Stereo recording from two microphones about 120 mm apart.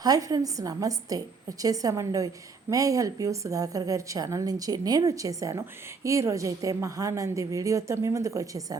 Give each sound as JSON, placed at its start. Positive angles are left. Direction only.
{"t": 0.0, "sound": "a woman's voice", "side_deg": -30}